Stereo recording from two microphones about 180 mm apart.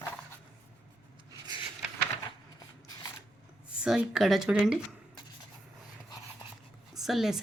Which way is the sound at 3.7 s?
5° right (ahead or behind).